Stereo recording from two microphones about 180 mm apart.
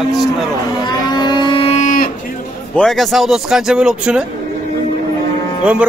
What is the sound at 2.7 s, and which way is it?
A man's voice, centre (ahead or behind).